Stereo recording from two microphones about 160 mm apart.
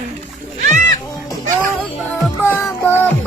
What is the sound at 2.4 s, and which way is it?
Music, 15° left (ahead or behind).